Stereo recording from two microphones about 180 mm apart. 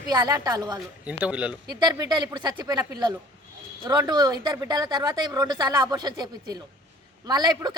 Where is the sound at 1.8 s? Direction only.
25° right (ahead or behind).